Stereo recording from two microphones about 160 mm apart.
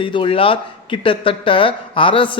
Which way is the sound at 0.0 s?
30° left (ahead or behind).